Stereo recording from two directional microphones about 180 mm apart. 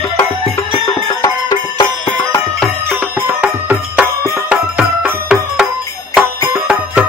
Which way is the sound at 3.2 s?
10° right (ahead or behind).